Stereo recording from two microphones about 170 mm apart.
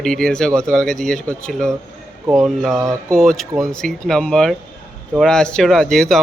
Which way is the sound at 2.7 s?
20° right (ahead or behind).